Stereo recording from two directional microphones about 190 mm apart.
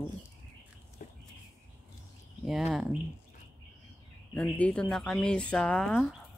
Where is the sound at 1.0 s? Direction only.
40° left (ahead or behind).